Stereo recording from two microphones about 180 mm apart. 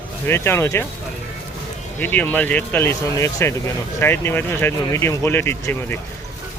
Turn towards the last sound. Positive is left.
turn(degrees=15)  # may be behind; listen again after turning